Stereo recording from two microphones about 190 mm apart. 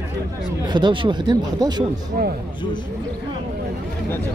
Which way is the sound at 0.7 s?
25° right (ahead or behind).